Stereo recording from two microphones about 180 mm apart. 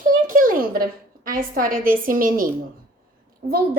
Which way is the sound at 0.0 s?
50° right (ahead or behind).